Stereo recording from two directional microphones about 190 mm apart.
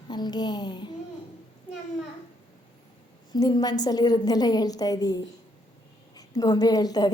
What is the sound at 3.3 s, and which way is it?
A woman's voice, 20° left (ahead or behind).